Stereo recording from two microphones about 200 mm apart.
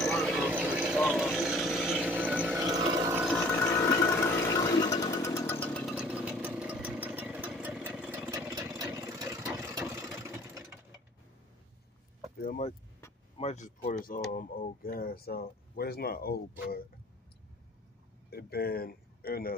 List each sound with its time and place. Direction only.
0.0 s vehicle: 5° left (ahead or behind)
3.5 s sewing machine: 15° left (ahead or behind); by 8.6 s 15° right (ahead or behind)
8.7 s vehicle: 15° right (ahead or behind)
12.4 s keys jangling: 45° left (ahead or behind)
13.4 s a sound: 35° left (ahead or behind)
14.3 s speech: 45° left (ahead or behind)
18.3 s speech: 50° left (ahead or behind)